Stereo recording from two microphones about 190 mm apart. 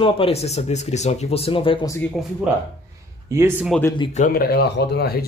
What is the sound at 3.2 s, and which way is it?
Speech, 15° right (ahead or behind).